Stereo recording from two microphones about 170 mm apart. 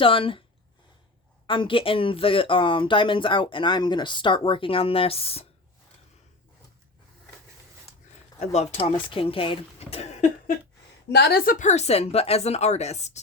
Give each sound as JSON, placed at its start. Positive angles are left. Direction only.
{"t": 0.0, "sound": "speech", "side_deg": 30}
{"t": 1.5, "sound": "speech", "side_deg": 30}
{"t": 8.4, "sound": "speech", "side_deg": 40}
{"t": 11.1, "sound": "a woman's voice", "side_deg": 65}
{"t": 11.6, "sound": "speech", "side_deg": 40}